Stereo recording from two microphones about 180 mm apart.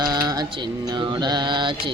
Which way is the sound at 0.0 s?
20° right (ahead or behind).